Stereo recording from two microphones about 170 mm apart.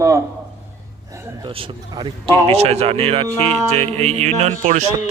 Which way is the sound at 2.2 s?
35° right (ahead or behind).